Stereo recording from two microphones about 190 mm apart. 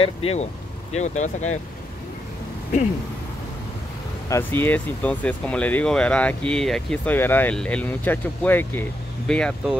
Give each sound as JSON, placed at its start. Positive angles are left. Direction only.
{"t": 0.0, "sound": "speech", "side_deg": 30}
{"t": 4.3, "sound": "speech", "side_deg": 10}